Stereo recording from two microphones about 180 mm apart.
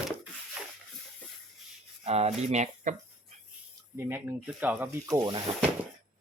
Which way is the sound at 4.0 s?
10° right (ahead or behind).